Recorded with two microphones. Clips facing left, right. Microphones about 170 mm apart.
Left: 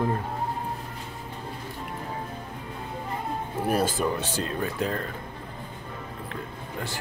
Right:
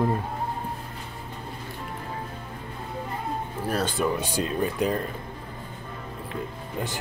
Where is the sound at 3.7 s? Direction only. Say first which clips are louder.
Left 1 dB; 5° left (ahead or behind).